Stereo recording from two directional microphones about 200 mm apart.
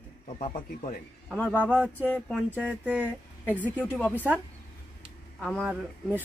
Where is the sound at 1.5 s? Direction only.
10° right (ahead or behind).